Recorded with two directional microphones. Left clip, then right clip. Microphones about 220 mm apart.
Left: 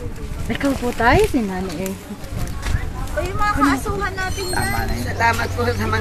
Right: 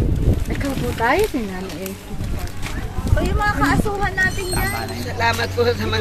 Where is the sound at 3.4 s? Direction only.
35° right (ahead or behind).